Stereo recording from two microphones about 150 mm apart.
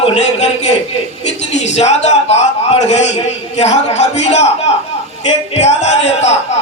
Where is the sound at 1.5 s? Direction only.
50° left (ahead or behind).